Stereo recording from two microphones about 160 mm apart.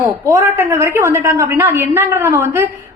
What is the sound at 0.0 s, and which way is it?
A woman's voice, 20° right (ahead or behind).